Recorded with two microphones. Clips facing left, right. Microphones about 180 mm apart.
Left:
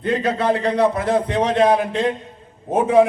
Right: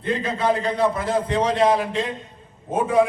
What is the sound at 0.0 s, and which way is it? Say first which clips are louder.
A man's voice: left 3 dB; 70° left (ahead or behind).